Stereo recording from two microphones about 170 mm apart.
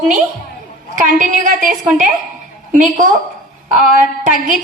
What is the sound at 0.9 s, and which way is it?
Speech, 50° right (ahead or behind).